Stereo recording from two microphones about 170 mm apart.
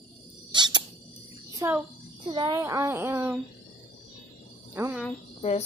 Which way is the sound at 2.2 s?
25° right (ahead or behind).